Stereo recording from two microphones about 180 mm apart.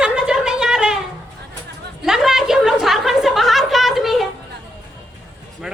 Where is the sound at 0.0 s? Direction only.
5° right (ahead or behind).